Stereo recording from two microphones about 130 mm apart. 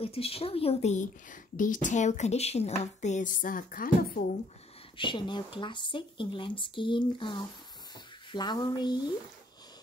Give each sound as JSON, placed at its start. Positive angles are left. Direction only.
{"t": 0.0, "sound": "a woman's voice", "side_deg": 50}
{"t": 4.9, "sound": "speech", "side_deg": 40}